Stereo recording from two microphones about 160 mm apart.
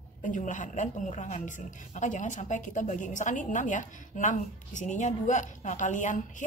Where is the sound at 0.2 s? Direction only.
50° left (ahead or behind).